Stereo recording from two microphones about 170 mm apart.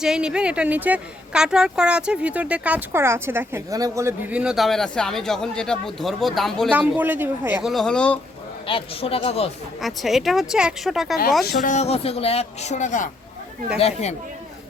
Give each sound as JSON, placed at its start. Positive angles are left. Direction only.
{"t": 0.0, "sound": "speech", "side_deg": -5}
{"t": 6.7, "sound": "a man's voice", "side_deg": -10}
{"t": 7.7, "sound": "speech", "side_deg": 5}
{"t": 8.6, "sound": "speech", "side_deg": 35}
{"t": 9.8, "sound": "speech", "side_deg": 0}
{"t": 11.6, "sound": "speech", "side_deg": 45}